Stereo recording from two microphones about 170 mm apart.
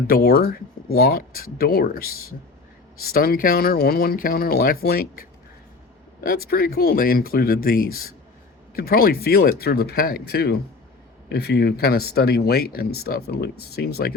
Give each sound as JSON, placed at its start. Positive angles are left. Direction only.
{"t": 0.1, "sound": "speech", "side_deg": 65}